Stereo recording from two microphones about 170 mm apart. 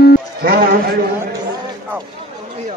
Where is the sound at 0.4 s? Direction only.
60° right (ahead or behind).